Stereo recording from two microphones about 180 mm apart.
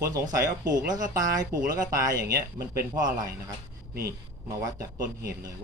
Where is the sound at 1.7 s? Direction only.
20° right (ahead or behind).